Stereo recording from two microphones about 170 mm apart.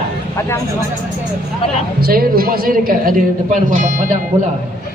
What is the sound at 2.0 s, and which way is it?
A woman's voice, 60° right (ahead or behind).